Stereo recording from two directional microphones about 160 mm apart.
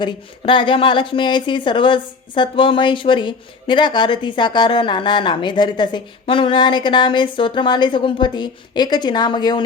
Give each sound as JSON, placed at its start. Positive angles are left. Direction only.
{"t": 0.0, "sound": "a woman's voice", "side_deg": 30}